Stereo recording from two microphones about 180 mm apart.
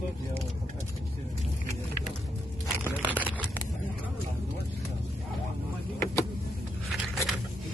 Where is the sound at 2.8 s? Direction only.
10° right (ahead or behind).